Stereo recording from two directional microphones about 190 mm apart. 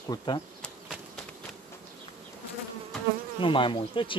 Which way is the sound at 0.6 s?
Centre (ahead or behind).